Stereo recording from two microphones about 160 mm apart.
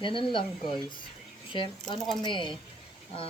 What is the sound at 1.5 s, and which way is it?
A woman's voice, 30° left (ahead or behind).